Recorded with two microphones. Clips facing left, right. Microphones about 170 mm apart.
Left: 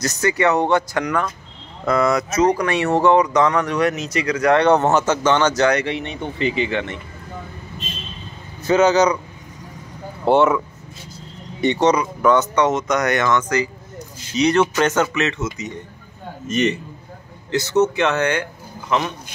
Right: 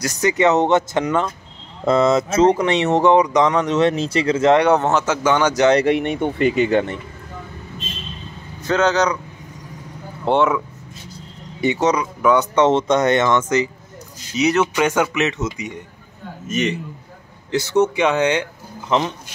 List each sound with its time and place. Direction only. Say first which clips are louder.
0.0 s speech: right 2 dB; 20° right (ahead or behind)
4.6 s speech: left 1 dB; 5° right (ahead or behind)
5.9 s speech: right 8 dB; 55° right (ahead or behind)
8.6 s speech: left 3 dB; 5° left (ahead or behind)
10.2 s speech: left 2 dB; centre (ahead or behind)
11.6 s speech: left 1 dB; 5° right (ahead or behind)
12.4 s speech: right 2 dB; 25° right (ahead or behind)
14.3 s speech: left 1 dB; 5° right (ahead or behind)
16.4 s speech: left 2 dB; centre (ahead or behind)
17.5 s speech: even; 10° right (ahead or behind)